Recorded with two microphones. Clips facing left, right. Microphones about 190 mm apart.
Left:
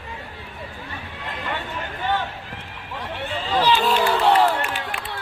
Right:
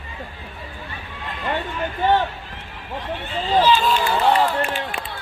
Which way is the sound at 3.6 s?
65° left (ahead or behind).